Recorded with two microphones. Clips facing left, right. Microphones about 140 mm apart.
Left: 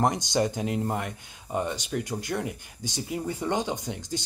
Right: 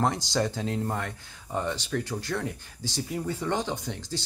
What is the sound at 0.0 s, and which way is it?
Speech, 15° left (ahead or behind).